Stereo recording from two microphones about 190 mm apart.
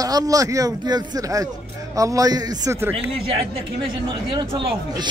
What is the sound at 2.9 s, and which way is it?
Speech, 30° right (ahead or behind).